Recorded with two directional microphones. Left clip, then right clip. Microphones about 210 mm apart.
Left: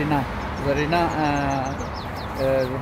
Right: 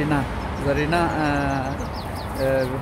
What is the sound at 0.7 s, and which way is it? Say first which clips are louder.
Speech: even; 10° left (ahead or behind).